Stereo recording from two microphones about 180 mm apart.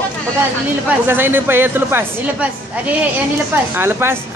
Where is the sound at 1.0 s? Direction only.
10° right (ahead or behind).